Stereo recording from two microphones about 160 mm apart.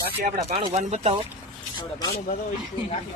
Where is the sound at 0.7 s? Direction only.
45° right (ahead or behind).